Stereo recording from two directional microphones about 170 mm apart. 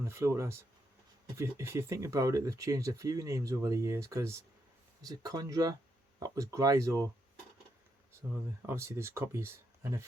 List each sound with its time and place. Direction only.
0.0 s speech: 15° right (ahead or behind)
8.6 s speech: 15° right (ahead or behind)